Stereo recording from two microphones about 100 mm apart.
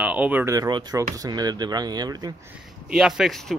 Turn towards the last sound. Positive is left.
turn(degrees=0)  # may be behind; listen again after turning